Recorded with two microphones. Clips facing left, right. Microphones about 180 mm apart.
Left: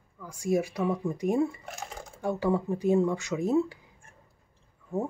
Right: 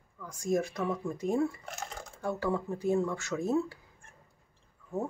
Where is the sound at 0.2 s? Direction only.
10° left (ahead or behind).